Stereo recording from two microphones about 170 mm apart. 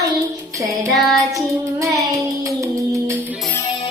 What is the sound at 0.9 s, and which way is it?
Child singing, centre (ahead or behind).